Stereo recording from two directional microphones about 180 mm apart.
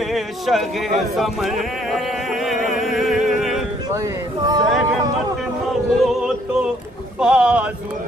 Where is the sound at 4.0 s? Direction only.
20° right (ahead or behind).